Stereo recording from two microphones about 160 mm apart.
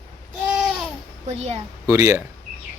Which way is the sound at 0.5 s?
Centre (ahead or behind).